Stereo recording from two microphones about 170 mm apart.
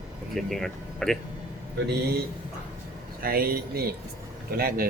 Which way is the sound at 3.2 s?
60° right (ahead or behind).